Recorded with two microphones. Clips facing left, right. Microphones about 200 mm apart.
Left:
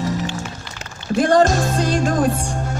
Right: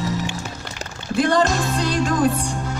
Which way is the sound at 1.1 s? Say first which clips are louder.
Left 4 dB; 45° left (ahead or behind).